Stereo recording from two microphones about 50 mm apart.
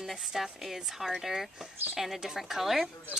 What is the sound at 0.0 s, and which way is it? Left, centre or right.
Speech, centre.